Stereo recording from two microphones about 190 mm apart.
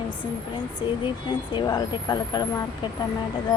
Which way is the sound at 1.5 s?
20° left (ahead or behind).